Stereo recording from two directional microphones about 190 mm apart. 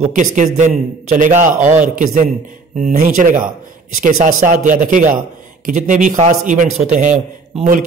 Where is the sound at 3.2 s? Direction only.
45° right (ahead or behind).